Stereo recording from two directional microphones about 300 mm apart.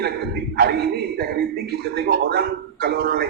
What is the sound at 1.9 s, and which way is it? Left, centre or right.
Speech, right.